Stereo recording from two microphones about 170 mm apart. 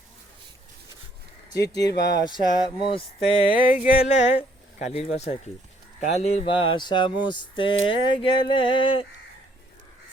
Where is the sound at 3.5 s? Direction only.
55° left (ahead or behind).